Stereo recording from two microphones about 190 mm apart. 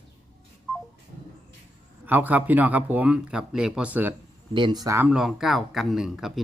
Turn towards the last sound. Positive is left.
turn(degrees=0)  # may be behind; listen again after turning